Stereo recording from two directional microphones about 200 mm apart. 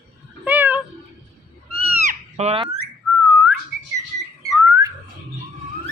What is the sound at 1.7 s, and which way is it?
Goat, 30° right (ahead or behind).